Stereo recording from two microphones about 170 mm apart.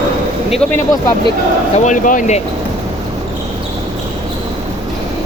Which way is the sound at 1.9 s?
50° left (ahead or behind).